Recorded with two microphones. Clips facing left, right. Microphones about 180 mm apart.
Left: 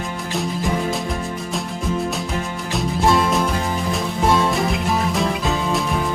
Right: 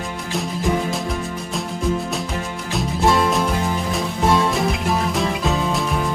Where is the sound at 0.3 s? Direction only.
Centre (ahead or behind).